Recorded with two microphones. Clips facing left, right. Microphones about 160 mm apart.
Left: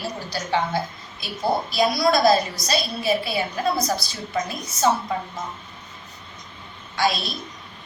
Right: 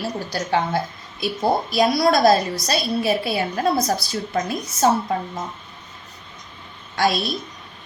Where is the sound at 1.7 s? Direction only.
50° right (ahead or behind).